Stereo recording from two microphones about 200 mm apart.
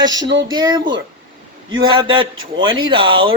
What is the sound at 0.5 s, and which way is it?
A man's voice, 20° right (ahead or behind).